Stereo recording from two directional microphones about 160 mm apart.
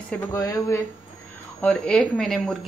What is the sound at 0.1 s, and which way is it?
Speech, 15° left (ahead or behind).